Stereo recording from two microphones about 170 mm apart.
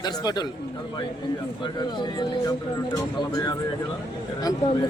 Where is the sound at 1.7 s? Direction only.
25° left (ahead or behind).